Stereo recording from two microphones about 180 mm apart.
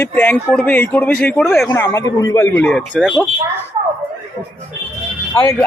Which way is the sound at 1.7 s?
15° left (ahead or behind).